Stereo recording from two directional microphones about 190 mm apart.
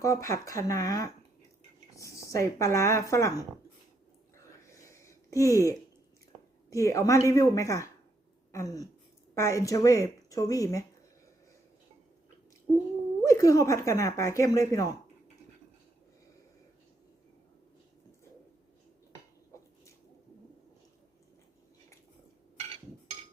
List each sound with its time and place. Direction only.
0.0 s speech: 15° left (ahead or behind)
4.4 s a sound: 15° left (ahead or behind)
6.7 s speech: 15° left (ahead or behind)
13.2 s speech: 15° left (ahead or behind)